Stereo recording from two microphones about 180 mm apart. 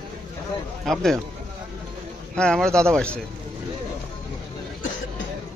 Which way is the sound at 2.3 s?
5° left (ahead or behind).